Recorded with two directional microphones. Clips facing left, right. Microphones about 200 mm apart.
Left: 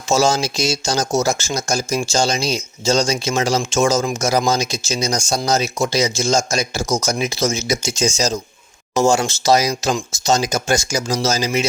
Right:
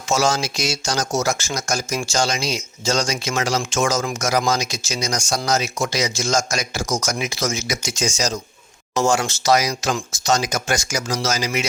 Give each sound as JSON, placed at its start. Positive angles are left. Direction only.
{"t": 0.1, "sound": "speech", "side_deg": 25}